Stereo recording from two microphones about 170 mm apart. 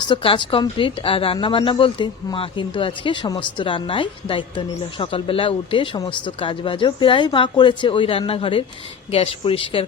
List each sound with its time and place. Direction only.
0.0 s a woman's voice: 30° left (ahead or behind)